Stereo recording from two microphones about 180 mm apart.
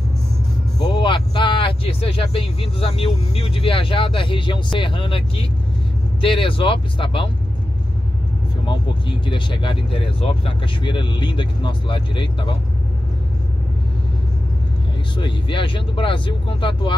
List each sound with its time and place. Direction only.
1.0 s speech: 25° left (ahead or behind)
6.2 s speech: 30° left (ahead or behind)
8.6 s speech: 25° left (ahead or behind)
15.1 s speech: 25° left (ahead or behind)